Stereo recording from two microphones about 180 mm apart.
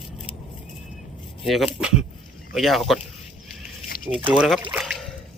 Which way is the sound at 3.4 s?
55° left (ahead or behind).